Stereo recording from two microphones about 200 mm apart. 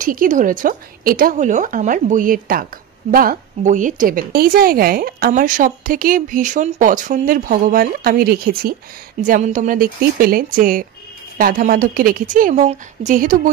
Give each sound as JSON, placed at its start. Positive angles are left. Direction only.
{"t": 0.0, "sound": "a woman's voice", "side_deg": -40}